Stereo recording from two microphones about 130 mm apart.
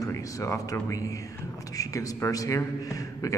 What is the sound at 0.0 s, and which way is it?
Speech, 25° left (ahead or behind).